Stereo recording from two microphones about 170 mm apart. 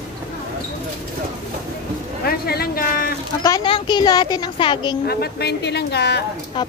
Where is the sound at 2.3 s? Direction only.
65° left (ahead or behind).